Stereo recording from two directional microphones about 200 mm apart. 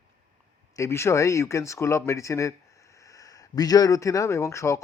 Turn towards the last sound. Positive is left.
turn(degrees=15)  # may be behind; listen again after turning